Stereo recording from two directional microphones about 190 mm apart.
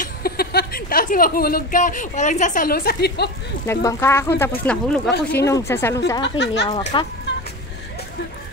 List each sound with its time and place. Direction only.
0.0 s speech: 55° left (ahead or behind)
3.6 s a woman's voice: 15° left (ahead or behind)
6.2 s speech: 65° left (ahead or behind)
6.9 s speech: 25° left (ahead or behind)